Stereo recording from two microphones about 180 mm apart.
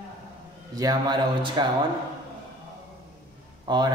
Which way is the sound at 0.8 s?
20° right (ahead or behind).